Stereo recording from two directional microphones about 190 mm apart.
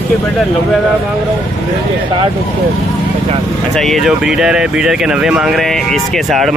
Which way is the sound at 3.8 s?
Centre (ahead or behind).